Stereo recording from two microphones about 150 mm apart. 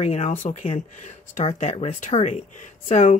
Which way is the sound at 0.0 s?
40° left (ahead or behind).